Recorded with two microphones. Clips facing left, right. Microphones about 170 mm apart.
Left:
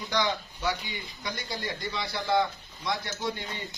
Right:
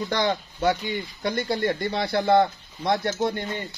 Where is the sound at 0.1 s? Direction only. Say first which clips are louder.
Right 1 dB; 55° right (ahead or behind).